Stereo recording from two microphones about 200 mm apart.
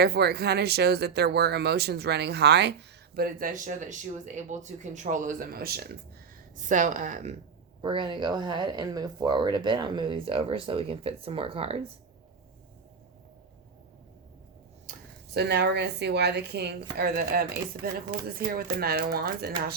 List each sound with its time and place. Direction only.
0.0 s speech: 50° right (ahead or behind)
3.2 s speech: 45° right (ahead or behind)
6.6 s speech: 40° right (ahead or behind)
7.8 s speech: 25° right (ahead or behind)
15.3 s a woman's voice: 55° right (ahead or behind)